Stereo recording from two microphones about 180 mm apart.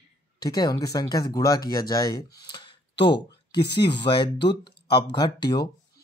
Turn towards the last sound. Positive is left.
turn(degrees=25)  # may be behind; listen again after turning